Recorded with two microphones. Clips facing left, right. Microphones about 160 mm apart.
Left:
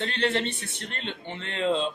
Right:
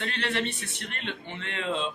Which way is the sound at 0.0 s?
30° left (ahead or behind).